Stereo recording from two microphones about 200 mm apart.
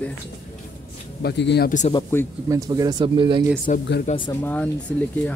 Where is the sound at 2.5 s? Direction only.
20° right (ahead or behind).